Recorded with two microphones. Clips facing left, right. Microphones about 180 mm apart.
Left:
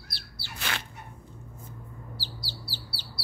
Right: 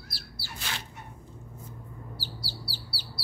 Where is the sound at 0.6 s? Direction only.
70° left (ahead or behind).